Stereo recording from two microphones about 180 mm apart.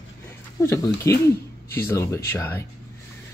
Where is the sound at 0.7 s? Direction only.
15° left (ahead or behind).